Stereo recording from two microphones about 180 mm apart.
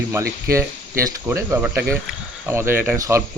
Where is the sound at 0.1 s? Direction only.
15° right (ahead or behind).